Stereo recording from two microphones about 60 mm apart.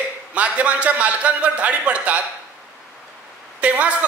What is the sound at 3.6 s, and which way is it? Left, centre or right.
Speech, right.